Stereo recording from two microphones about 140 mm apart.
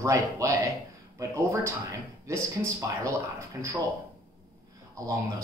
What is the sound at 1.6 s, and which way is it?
Speech, 20° right (ahead or behind).